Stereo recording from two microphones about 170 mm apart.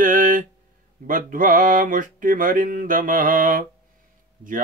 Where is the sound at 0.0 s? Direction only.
50° right (ahead or behind).